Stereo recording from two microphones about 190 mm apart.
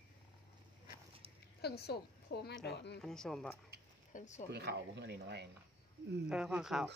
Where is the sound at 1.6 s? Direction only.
55° left (ahead or behind).